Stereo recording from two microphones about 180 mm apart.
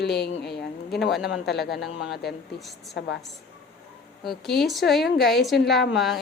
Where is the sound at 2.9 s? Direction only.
75° left (ahead or behind).